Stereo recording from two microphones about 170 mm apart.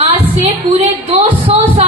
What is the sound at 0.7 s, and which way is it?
A woman's voice, 40° right (ahead or behind).